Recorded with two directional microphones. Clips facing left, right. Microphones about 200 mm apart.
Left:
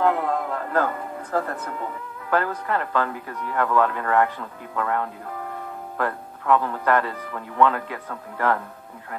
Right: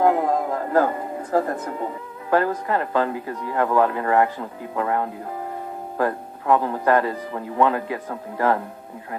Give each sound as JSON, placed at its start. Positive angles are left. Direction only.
{"t": 0.0, "sound": "speech", "side_deg": -25}